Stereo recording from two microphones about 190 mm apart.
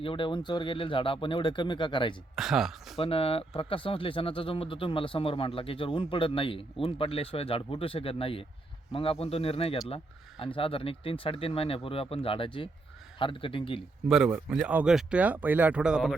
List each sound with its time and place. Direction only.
0.0 s speech: 25° left (ahead or behind)
2.3 s speech: centre (ahead or behind)
3.0 s speech: 30° left (ahead or behind)
14.1 s speech: 5° right (ahead or behind)